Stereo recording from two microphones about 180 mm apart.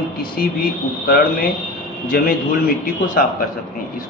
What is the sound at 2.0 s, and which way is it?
Speech, 55° left (ahead or behind).